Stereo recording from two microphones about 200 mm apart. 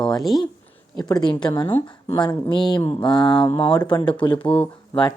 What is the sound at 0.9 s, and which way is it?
Speech, 20° left (ahead or behind).